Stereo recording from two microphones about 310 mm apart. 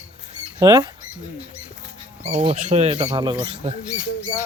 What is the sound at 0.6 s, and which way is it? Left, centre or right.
Speech, centre.